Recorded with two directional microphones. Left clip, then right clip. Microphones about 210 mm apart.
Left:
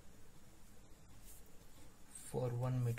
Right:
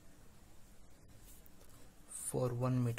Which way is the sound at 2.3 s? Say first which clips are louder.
Right 5 dB; 35° right (ahead or behind).